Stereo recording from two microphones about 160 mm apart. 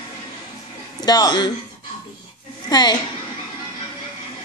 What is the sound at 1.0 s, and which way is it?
Speech, 25° left (ahead or behind).